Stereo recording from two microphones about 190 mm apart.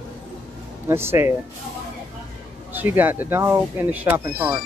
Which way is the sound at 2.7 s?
10° right (ahead or behind).